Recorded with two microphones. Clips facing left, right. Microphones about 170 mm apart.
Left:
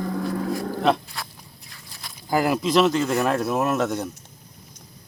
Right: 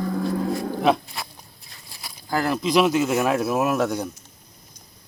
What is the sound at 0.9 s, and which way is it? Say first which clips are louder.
Speech: right 1 dB; centre (ahead or behind).